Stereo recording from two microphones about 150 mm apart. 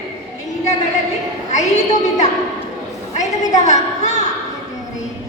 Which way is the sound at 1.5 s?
50° left (ahead or behind).